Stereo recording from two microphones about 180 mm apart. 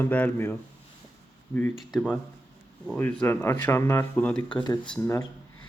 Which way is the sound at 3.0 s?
10° left (ahead or behind).